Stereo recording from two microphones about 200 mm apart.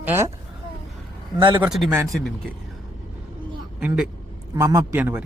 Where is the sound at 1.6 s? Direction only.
Centre (ahead or behind).